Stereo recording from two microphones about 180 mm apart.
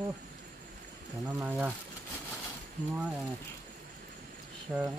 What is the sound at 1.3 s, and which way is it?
Speech, 10° right (ahead or behind).